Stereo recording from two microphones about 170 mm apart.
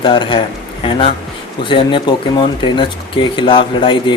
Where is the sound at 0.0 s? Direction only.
30° left (ahead or behind).